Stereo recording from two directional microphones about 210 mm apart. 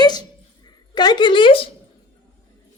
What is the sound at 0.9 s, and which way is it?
Speech, 20° left (ahead or behind).